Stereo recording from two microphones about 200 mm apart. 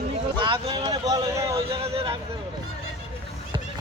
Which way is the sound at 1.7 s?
30° right (ahead or behind).